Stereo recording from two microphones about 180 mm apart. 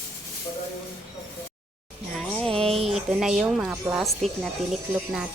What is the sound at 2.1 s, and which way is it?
Music, 5° left (ahead or behind).